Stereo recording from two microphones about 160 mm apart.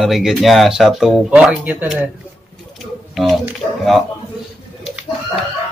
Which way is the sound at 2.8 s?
Centre (ahead or behind).